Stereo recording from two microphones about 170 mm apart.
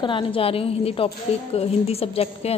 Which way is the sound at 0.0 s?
30° left (ahead or behind).